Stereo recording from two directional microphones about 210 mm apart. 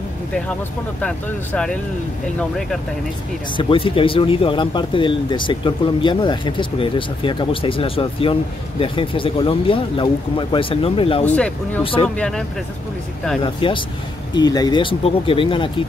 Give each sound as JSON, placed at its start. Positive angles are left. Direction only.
{"t": 1.0, "sound": "speech", "side_deg": 5}
{"t": 3.5, "sound": "speech", "side_deg": 25}
{"t": 11.2, "sound": "speech", "side_deg": 5}
{"t": 11.8, "sound": "speech", "side_deg": 25}
{"t": 12.2, "sound": "speech", "side_deg": 0}
{"t": 13.4, "sound": "speech", "side_deg": 25}